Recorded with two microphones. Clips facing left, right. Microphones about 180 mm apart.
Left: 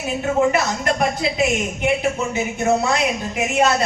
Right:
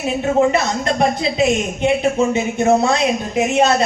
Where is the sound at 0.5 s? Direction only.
30° right (ahead or behind).